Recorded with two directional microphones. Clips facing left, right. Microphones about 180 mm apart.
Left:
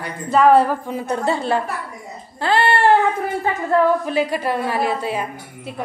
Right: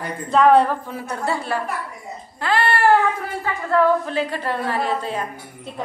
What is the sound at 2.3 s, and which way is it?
Baby cry, 30° left (ahead or behind).